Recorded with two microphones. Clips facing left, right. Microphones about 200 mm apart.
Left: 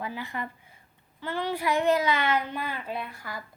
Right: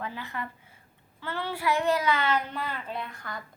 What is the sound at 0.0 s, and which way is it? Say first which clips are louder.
A child's voice: left 2 dB; 15° left (ahead or behind).